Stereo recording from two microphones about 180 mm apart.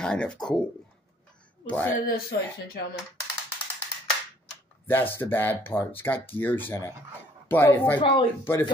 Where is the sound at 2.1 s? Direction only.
55° left (ahead or behind).